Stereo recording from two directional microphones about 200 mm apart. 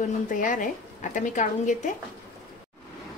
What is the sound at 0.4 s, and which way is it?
A woman's voice, 40° left (ahead or behind).